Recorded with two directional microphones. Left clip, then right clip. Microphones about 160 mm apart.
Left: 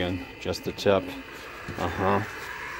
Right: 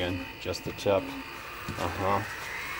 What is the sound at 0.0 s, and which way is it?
Speech, 45° left (ahead or behind).